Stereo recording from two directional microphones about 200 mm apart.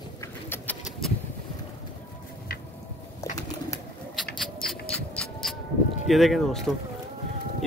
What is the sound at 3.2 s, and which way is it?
Pigeon, 15° left (ahead or behind).